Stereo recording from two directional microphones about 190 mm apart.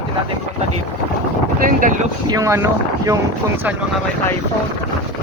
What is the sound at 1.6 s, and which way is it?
Speech, 45° right (ahead or behind).